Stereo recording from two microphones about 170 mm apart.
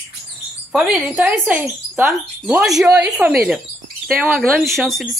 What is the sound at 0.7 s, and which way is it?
Speech, 10° right (ahead or behind).